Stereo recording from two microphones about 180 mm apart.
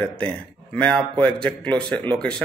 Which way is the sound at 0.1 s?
5° left (ahead or behind).